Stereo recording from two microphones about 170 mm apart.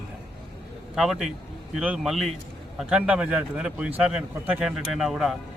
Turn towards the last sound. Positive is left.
turn(degrees=0)  # may be behind; listen again after turning